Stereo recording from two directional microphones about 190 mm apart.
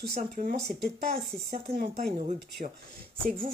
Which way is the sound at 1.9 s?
35° right (ahead or behind).